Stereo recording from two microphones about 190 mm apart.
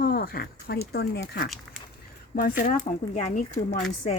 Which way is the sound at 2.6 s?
35° left (ahead or behind).